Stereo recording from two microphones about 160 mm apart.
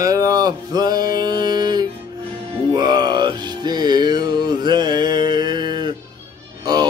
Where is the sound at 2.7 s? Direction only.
25° right (ahead or behind).